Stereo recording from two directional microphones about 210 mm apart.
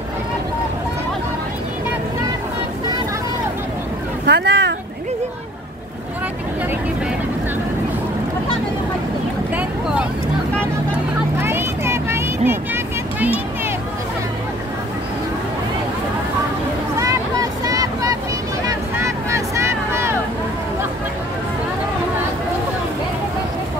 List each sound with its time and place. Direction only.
4.3 s boat: 50° right (ahead or behind)
11.4 s vehicle: 10° right (ahead or behind)
17.0 s vehicle: 15° right (ahead or behind)
18.7 s a sound: 15° right (ahead or behind)